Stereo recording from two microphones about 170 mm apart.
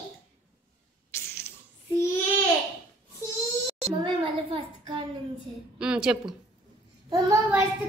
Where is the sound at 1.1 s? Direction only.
15° left (ahead or behind).